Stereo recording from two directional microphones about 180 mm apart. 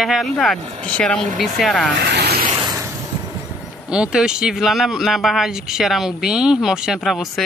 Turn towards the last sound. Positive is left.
turn(degrees=0)  # may be behind; listen again after turning